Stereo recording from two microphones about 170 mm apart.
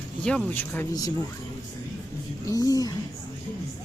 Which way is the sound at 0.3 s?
10° left (ahead or behind).